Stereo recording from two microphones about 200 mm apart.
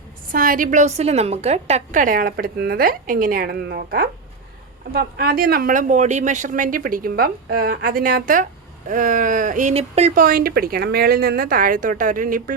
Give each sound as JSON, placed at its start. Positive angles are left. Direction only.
{"t": 0.3, "sound": "a woman's voice", "side_deg": -45}
{"t": 10.2, "sound": "a woman's voice", "side_deg": -45}